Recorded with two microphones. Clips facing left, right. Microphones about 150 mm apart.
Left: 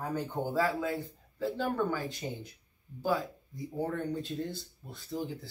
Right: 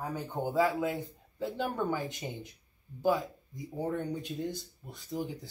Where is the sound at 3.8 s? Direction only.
15° right (ahead or behind).